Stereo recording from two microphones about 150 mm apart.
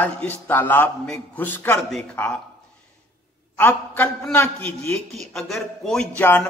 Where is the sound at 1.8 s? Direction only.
Centre (ahead or behind).